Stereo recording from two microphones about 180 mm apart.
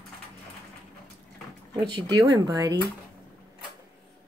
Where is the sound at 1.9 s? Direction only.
20° right (ahead or behind).